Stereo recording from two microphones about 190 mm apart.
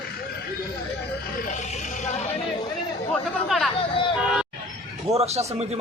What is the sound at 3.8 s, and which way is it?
Speech, 25° left (ahead or behind).